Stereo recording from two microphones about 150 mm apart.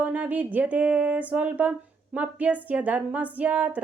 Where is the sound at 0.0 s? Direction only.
10° right (ahead or behind).